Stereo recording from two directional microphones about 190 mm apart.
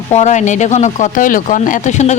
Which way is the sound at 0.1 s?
35° left (ahead or behind).